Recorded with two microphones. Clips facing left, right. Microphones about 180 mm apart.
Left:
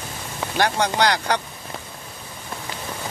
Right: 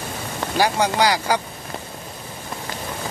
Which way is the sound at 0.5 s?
10° right (ahead or behind).